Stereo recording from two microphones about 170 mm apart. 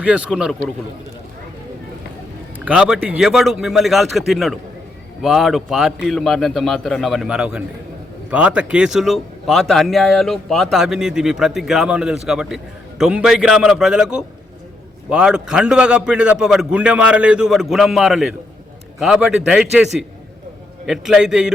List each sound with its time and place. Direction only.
0.0 s speech: 5° right (ahead or behind)
2.6 s speech: 5° right (ahead or behind)
20.8 s speech: 5° right (ahead or behind)